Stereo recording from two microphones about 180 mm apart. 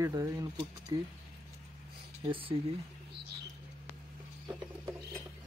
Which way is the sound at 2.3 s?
30° right (ahead or behind).